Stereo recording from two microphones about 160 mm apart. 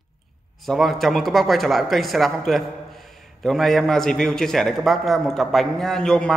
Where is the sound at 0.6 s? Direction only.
Centre (ahead or behind).